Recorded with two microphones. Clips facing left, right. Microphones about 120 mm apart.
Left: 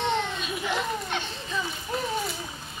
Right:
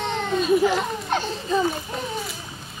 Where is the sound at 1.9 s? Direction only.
Centre (ahead or behind).